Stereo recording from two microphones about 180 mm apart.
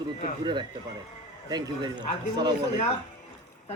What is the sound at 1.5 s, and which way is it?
Speech, 25° right (ahead or behind).